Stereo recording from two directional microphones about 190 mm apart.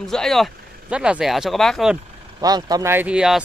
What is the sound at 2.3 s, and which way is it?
Speech, 20° right (ahead or behind).